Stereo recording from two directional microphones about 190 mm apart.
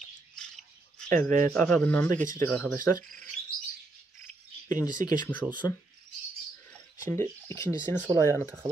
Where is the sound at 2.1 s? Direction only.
40° right (ahead or behind).